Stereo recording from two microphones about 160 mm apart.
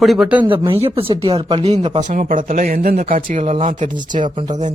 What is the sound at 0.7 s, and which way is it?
Speech, 35° right (ahead or behind).